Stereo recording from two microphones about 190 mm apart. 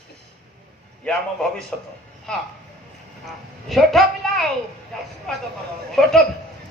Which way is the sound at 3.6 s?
Centre (ahead or behind).